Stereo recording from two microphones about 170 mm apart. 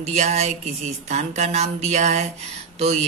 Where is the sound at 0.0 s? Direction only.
40° right (ahead or behind).